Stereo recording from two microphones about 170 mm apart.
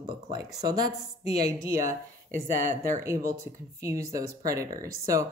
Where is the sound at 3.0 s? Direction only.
15° right (ahead or behind).